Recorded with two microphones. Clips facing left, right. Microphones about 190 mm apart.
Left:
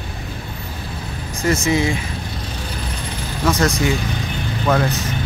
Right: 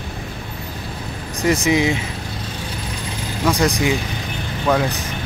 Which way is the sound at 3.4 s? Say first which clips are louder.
Even; 15° right (ahead or behind).